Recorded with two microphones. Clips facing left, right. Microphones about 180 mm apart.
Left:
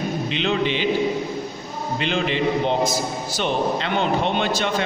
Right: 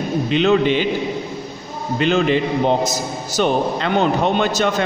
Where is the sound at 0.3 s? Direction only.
45° right (ahead or behind).